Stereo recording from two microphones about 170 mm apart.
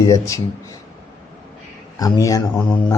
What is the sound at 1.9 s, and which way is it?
Speech, 20° left (ahead or behind).